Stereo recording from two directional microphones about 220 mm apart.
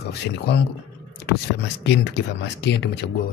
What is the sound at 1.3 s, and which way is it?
Speech, 50° left (ahead or behind).